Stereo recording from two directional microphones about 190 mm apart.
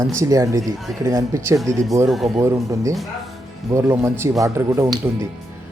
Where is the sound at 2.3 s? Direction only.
15° right (ahead or behind).